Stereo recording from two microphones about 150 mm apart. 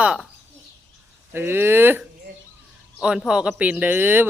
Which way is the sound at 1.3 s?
15° right (ahead or behind).